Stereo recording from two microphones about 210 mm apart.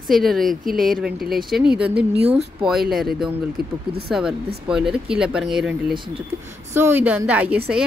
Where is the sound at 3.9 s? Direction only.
50° right (ahead or behind).